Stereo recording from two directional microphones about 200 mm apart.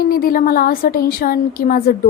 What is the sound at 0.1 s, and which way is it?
A woman's voice, 45° left (ahead or behind).